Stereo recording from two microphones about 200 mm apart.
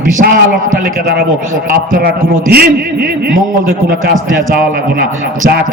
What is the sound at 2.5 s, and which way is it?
Speech, 50° right (ahead or behind).